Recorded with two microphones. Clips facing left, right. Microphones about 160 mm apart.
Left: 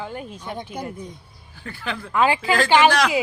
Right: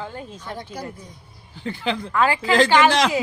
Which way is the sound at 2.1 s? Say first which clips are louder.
Left 2 dB; 20° left (ahead or behind).